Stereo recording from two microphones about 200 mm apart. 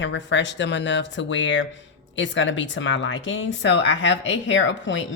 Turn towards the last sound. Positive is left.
turn(degrees=70)  # may be behind; listen again after turning